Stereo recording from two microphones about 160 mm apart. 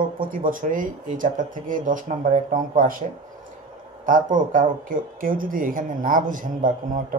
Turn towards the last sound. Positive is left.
turn(degrees=-55)  # may be behind; listen again after turning